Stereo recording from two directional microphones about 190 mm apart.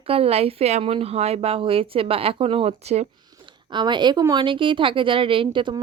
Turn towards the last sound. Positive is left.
turn(degrees=-25)  # may be behind; listen again after turning